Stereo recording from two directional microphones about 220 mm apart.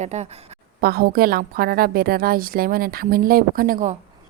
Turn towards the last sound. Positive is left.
turn(degrees=-35)  # may be behind; listen again after turning